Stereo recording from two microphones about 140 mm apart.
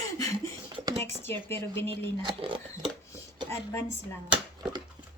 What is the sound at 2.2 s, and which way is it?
Speech, 40° right (ahead or behind).